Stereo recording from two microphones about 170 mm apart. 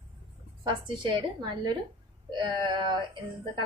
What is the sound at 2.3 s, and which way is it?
Speech, 25° right (ahead or behind).